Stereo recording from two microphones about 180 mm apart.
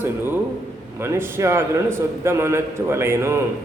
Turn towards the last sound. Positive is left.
turn(degrees=-15)  # may be behind; listen again after turning